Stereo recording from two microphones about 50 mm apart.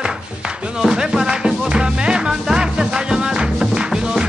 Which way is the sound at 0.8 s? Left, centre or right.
Centre.